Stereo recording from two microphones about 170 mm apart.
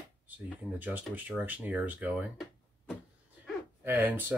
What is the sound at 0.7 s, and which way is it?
Speech, 10° right (ahead or behind).